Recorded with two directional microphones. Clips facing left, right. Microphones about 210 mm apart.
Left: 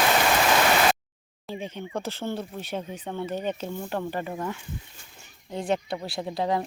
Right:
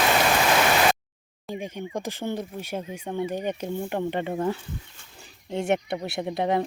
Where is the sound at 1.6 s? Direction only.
15° right (ahead or behind).